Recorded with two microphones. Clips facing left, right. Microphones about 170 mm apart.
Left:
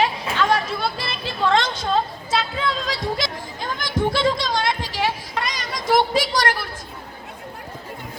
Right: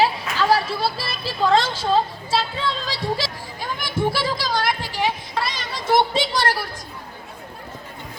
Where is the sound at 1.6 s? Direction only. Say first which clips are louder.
Even; 5° right (ahead or behind).